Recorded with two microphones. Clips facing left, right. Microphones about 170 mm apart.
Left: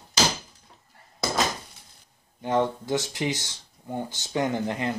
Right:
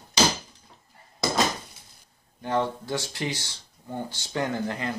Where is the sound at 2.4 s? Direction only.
15° left (ahead or behind).